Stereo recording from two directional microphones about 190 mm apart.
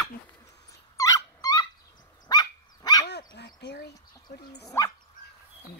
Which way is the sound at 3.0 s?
60° left (ahead or behind).